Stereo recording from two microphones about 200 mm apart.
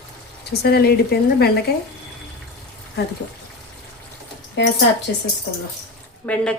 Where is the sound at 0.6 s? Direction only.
50° left (ahead or behind).